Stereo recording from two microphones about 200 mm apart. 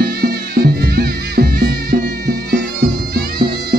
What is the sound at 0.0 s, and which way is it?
Music, 50° right (ahead or behind).